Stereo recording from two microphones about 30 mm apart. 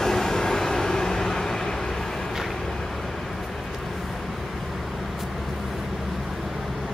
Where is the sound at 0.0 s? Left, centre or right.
Centre.